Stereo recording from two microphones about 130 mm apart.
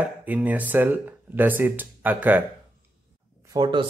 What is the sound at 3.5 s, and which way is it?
Speech, 35° right (ahead or behind).